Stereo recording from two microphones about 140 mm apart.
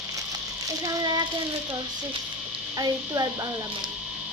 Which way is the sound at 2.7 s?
25° right (ahead or behind).